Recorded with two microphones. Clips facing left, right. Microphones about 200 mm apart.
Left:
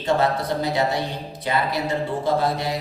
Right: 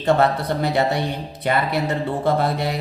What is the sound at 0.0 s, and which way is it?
Speech, 60° right (ahead or behind).